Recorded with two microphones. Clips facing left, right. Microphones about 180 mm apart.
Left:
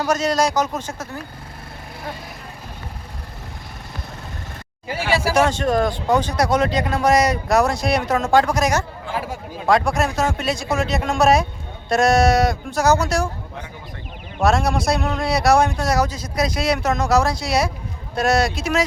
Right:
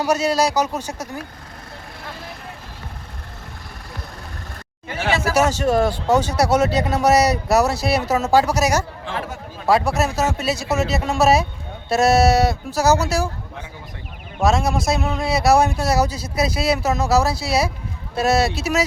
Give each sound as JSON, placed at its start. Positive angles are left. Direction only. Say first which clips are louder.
{"t": 0.0, "sound": "speech", "louder": "right 1 dB", "side_deg": -10}
{"t": 5.4, "sound": "speech", "louder": "right 2 dB", "side_deg": -5}
{"t": 14.3, "sound": "speech", "louder": "even", "side_deg": 0}